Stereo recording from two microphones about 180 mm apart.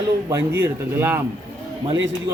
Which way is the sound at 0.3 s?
15° right (ahead or behind).